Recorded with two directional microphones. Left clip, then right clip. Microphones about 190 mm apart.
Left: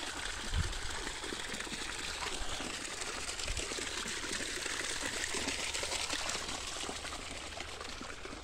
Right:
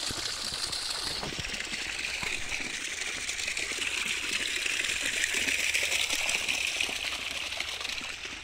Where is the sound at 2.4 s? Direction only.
35° right (ahead or behind).